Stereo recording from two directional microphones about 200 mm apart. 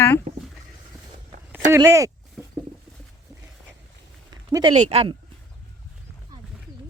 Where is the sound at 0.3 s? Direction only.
40° right (ahead or behind).